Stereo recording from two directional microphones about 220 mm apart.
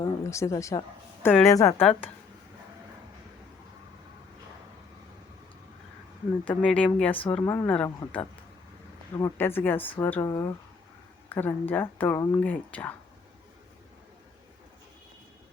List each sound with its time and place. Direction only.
0.0 s a woman's voice: 15° left (ahead or behind)
6.4 s a woman's voice: 5° left (ahead or behind)
7.3 s a woman's voice: 20° left (ahead or behind)
7.5 s a woman's voice: 10° left (ahead or behind)